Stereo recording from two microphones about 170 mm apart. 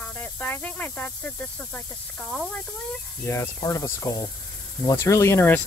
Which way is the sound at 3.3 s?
15° left (ahead or behind).